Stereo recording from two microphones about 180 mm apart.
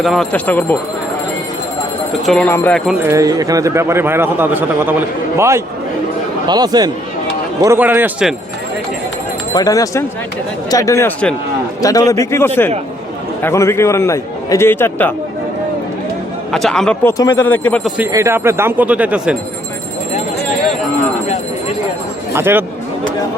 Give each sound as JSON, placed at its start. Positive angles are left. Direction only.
{"t": 0.0, "sound": "a man's voice", "side_deg": 0}
{"t": 2.2, "sound": "speech", "side_deg": 5}
{"t": 3.0, "sound": "speech", "side_deg": -15}
{"t": 9.6, "sound": "a man's voice", "side_deg": 20}
{"t": 16.5, "sound": "a man's voice", "side_deg": 0}
{"t": 18.1, "sound": "speech", "side_deg": -15}
{"t": 22.3, "sound": "speech", "side_deg": -10}